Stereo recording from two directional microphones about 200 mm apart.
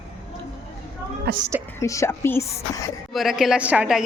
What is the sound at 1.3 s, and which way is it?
Speech, 55° right (ahead or behind).